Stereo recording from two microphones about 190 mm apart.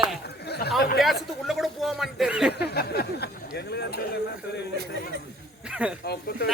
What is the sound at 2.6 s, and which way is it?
Speech, 55° left (ahead or behind).